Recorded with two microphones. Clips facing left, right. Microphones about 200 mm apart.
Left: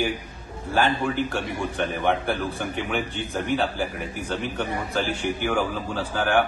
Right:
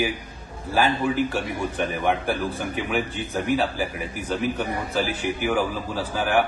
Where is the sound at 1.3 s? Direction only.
Centre (ahead or behind).